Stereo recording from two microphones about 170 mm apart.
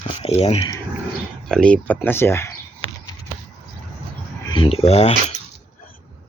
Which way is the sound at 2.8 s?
35° right (ahead or behind).